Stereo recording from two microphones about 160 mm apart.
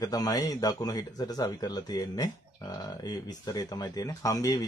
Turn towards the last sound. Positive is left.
turn(degrees=20)  # may be behind; listen again after turning